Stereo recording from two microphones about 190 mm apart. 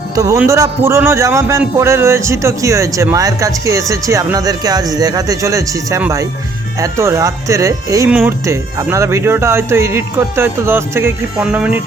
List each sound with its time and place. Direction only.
0.2 s a man's voice: 15° right (ahead or behind)